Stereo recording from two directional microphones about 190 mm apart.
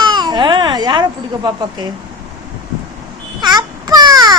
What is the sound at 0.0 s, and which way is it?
Baby cry, 25° right (ahead or behind).